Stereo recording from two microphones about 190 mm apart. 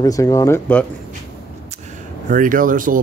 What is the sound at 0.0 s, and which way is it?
Speech, 20° left (ahead or behind).